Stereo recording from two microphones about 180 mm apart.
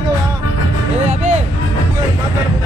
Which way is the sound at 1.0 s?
40° right (ahead or behind).